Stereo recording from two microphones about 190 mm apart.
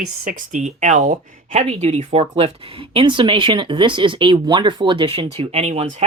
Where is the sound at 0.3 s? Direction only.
45° right (ahead or behind).